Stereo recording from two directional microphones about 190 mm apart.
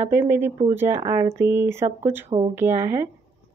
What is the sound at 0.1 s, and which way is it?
A woman's voice, 10° right (ahead or behind).